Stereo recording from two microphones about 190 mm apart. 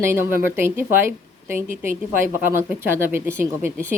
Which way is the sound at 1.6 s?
45° right (ahead or behind).